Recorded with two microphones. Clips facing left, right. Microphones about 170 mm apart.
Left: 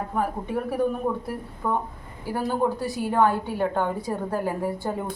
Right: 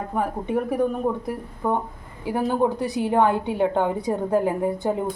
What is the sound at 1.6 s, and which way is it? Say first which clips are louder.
A woman's voice: right 3 dB; 20° right (ahead or behind).